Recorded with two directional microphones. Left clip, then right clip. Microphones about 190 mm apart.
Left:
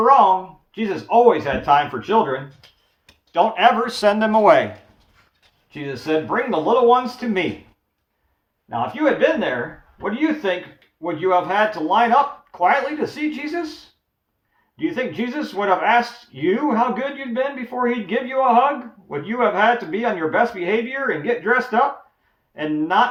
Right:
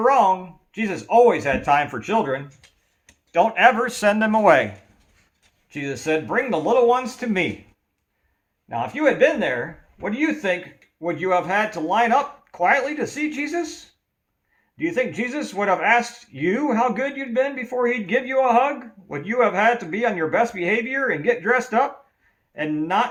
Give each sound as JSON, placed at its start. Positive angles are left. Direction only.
{"t": 0.0, "sound": "a sound", "side_deg": -50}
{"t": 0.7, "sound": "speech", "side_deg": -50}
{"t": 5.7, "sound": "speech", "side_deg": -50}
{"t": 8.7, "sound": "speech", "side_deg": -50}
{"t": 14.8, "sound": "speech", "side_deg": -50}